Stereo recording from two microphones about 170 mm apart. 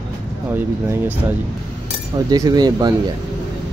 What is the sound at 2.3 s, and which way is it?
Speech, 25° right (ahead or behind).